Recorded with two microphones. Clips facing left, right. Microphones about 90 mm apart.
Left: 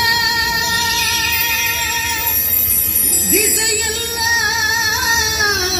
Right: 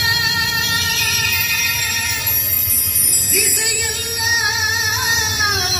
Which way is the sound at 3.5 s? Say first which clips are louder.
Left 4 dB; 90° left.